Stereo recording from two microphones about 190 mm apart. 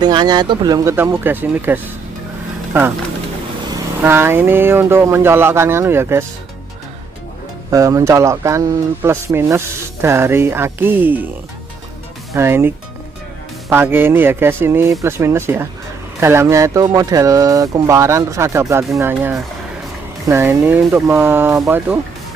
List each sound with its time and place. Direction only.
0.0 s speech: 20° right (ahead or behind)
4.0 s speech: 10° right (ahead or behind)
7.7 s speech: 15° right (ahead or behind)
12.4 s speech: 10° right (ahead or behind)